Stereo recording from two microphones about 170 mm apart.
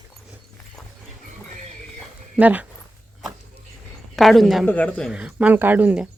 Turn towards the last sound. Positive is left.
turn(degrees=-10)  # may be behind; listen again after turning